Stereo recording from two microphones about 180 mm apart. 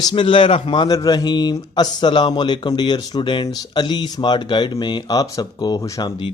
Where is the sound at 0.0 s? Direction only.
25° left (ahead or behind).